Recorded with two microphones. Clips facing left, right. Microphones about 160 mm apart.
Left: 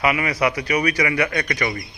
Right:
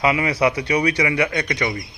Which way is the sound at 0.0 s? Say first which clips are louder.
Right 2 dB; 25° right (ahead or behind).